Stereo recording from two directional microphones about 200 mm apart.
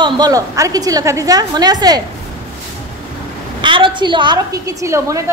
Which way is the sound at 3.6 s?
25° right (ahead or behind).